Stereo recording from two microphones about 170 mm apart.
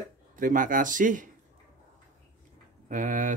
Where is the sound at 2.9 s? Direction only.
50° right (ahead or behind).